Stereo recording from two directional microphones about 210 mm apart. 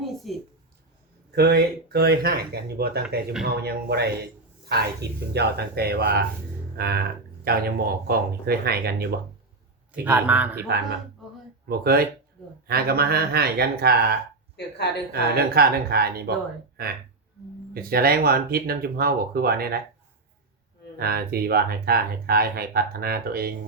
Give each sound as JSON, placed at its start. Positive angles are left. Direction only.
{"t": 0.0, "sound": "a sound", "side_deg": 0}
{"t": 1.4, "sound": "speech", "side_deg": -50}
{"t": 6.7, "sound": "music", "side_deg": -50}
{"t": 7.4, "sound": "speech", "side_deg": -45}
{"t": 10.0, "sound": "a man's voice", "side_deg": -10}
{"t": 11.7, "sound": "speech", "side_deg": -45}
{"t": 14.5, "sound": "a woman's voice", "side_deg": 55}
{"t": 15.1, "sound": "speech", "side_deg": -50}
{"t": 17.7, "sound": "speech", "side_deg": -45}
{"t": 21.0, "sound": "speech", "side_deg": -45}